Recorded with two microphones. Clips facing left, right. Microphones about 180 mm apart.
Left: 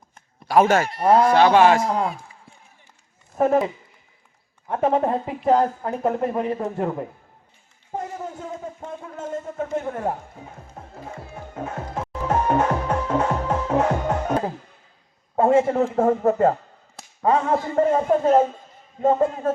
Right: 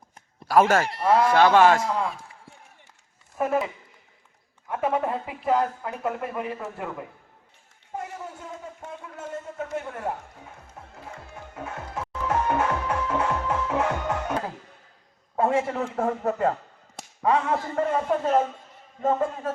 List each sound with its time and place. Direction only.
0.6 s speech: 10° left (ahead or behind)
1.0 s speech: 30° left (ahead or behind)
1.3 s speech: 15° left (ahead or behind)
1.8 s speech: 40° left (ahead or behind)
3.3 s speech: 35° left (ahead or behind)
4.7 s speech: 35° left (ahead or behind)
7.9 s a sound: 35° left (ahead or behind)
9.2 s speech: 35° left (ahead or behind)
11.1 s music: 35° left (ahead or behind)
11.9 s music: 20° left (ahead or behind)
12.4 s music: 35° left (ahead or behind)
15.4 s speech: 40° left (ahead or behind)